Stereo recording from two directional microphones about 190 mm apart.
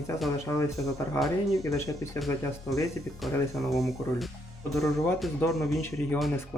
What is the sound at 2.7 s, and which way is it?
Speech, centre (ahead or behind).